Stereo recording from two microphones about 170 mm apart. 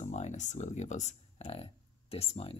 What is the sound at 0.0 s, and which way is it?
Speech, 45° left (ahead or behind).